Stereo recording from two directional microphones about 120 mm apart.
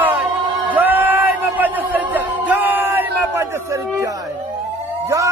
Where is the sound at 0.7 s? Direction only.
15° right (ahead or behind).